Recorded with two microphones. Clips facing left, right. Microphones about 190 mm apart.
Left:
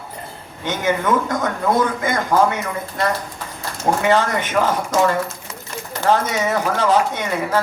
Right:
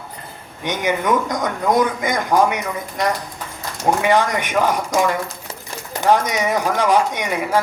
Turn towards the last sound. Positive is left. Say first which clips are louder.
# even
turn(degrees=-15)  # may be behind; listen again after turning